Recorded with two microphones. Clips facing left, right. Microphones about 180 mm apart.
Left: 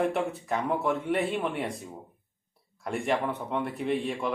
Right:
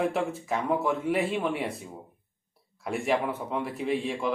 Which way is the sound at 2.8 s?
5° right (ahead or behind).